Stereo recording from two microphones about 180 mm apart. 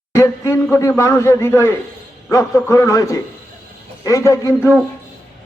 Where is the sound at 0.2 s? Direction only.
15° left (ahead or behind).